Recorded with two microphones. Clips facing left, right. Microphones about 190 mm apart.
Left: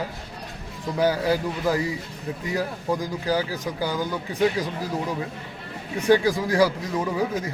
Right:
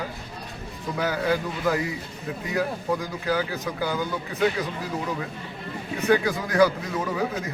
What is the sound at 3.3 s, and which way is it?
Speech, 35° left (ahead or behind).